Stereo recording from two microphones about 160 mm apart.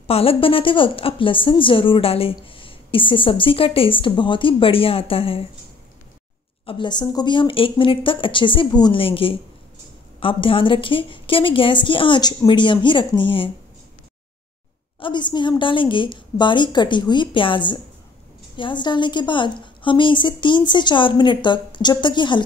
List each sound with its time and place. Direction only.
0.0 s a woman's voice: 35° left (ahead or behind)
6.6 s a woman's voice: 30° left (ahead or behind)
15.0 s a woman's voice: 30° left (ahead or behind)